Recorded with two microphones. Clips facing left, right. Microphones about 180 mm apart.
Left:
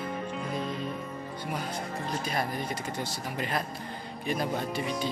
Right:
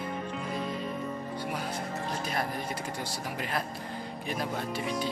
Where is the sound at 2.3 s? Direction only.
10° right (ahead or behind).